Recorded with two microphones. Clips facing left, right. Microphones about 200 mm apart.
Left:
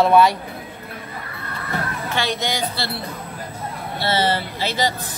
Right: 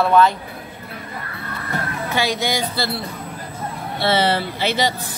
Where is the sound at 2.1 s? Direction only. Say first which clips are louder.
Right 3 dB; 10° right (ahead or behind).